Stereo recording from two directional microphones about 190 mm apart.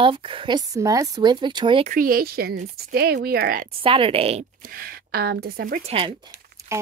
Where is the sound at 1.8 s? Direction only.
45° right (ahead or behind).